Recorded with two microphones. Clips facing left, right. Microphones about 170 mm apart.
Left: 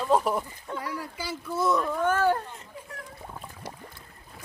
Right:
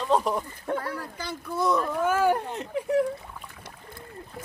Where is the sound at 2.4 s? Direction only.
75° right (ahead or behind).